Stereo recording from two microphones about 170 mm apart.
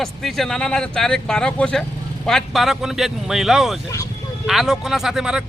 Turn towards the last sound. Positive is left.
turn(degrees=-5)  # may be behind; listen again after turning